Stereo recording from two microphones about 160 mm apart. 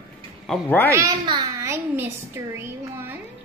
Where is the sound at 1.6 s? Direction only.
15° right (ahead or behind).